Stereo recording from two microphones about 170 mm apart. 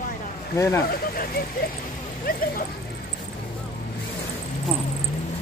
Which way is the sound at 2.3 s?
60° left (ahead or behind).